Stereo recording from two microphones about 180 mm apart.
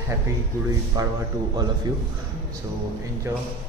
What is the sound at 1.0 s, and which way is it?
Speech, 20° right (ahead or behind).